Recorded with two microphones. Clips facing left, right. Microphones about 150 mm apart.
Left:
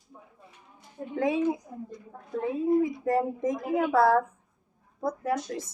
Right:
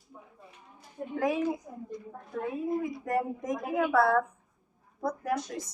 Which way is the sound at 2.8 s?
25° left (ahead or behind).